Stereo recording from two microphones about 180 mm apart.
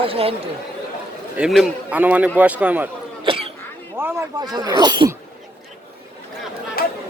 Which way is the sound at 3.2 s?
30° right (ahead or behind).